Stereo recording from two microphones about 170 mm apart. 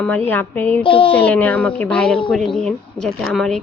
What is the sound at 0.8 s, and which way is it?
Speech, 30° left (ahead or behind).